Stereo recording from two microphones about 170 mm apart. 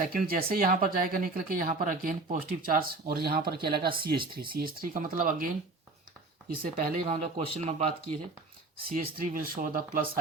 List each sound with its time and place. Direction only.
0.1 s speech: 60° right (ahead or behind)
6.6 s speech: 55° right (ahead or behind)
7.1 s speech: 40° right (ahead or behind)
8.9 s speech: 55° right (ahead or behind)